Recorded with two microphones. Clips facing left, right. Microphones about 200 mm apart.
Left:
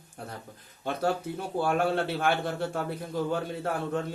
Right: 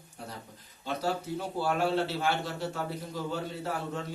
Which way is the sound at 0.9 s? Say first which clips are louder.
Left 3 dB; 55° left (ahead or behind).